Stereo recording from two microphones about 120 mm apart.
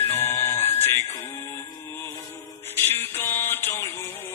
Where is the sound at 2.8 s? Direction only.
15° left (ahead or behind).